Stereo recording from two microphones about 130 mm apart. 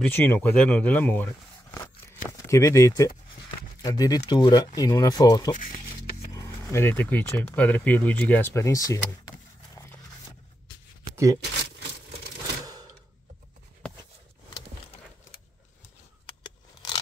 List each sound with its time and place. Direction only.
0.0 s speech: 15° left (ahead or behind)
16.3 s keys jangling: 35° left (ahead or behind)